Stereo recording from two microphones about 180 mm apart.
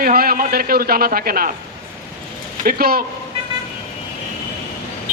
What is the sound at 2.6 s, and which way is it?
Speech, 55° right (ahead or behind).